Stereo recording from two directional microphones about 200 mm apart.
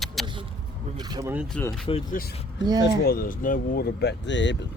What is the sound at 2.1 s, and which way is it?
Speech, 50° left (ahead or behind).